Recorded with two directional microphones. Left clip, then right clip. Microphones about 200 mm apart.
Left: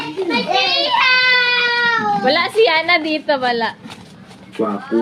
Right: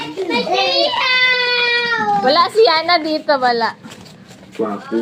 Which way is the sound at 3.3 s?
20° left (ahead or behind).